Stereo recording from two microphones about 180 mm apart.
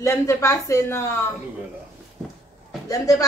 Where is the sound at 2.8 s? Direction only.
20° left (ahead or behind).